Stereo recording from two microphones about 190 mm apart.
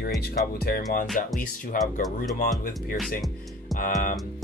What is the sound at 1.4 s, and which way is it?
Speech, 45° left (ahead or behind).